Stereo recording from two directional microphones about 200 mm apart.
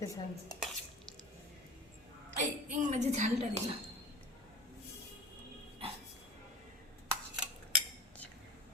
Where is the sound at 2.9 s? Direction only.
35° right (ahead or behind).